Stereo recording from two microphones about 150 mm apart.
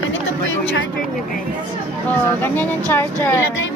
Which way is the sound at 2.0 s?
10° left (ahead or behind).